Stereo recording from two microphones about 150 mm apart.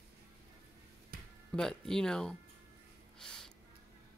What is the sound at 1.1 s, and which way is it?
Music, 90° right.